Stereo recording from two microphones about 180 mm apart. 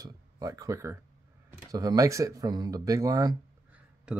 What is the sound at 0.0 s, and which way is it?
Speech, 20° right (ahead or behind).